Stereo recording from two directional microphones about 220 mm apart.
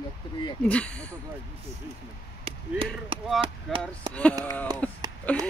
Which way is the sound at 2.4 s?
25° right (ahead or behind).